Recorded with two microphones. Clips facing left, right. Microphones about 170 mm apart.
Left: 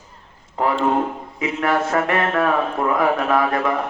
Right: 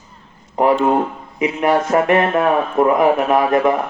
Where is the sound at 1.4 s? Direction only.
20° right (ahead or behind).